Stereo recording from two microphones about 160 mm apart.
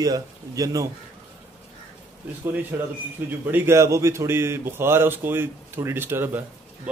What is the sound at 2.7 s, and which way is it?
A man's voice, 10° right (ahead or behind).